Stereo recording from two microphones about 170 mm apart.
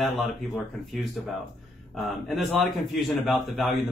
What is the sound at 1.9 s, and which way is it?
Speech, centre (ahead or behind).